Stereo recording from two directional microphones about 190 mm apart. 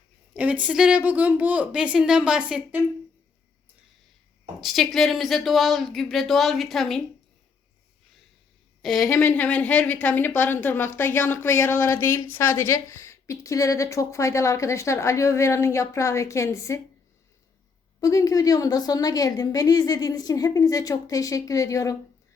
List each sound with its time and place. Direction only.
0.3 s a woman's voice: 5° right (ahead or behind)
4.6 s a woman's voice: centre (ahead or behind)
8.8 s a woman's voice: centre (ahead or behind)
9.0 s a woman's voice: 10° left (ahead or behind)
18.0 s a woman's voice: 20° left (ahead or behind)